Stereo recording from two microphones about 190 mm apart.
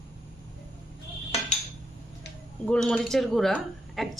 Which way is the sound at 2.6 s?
5° left (ahead or behind).